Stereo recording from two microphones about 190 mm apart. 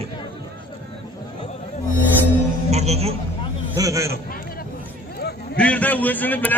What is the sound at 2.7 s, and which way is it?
Speech, 35° right (ahead or behind).